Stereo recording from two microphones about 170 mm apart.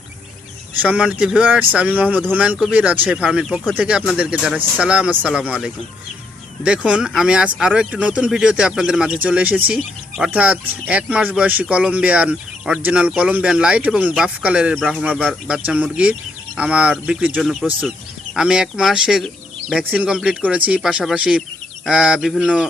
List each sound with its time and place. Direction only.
0.8 s speech: 5° right (ahead or behind)